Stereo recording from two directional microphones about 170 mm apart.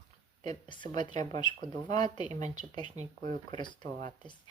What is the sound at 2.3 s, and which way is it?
Speech, 45° right (ahead or behind).